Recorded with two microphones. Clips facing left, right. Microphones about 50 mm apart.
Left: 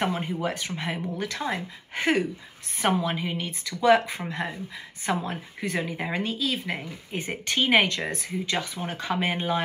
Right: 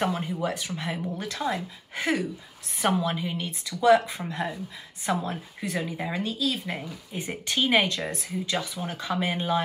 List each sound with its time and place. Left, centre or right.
0.0 s speech: left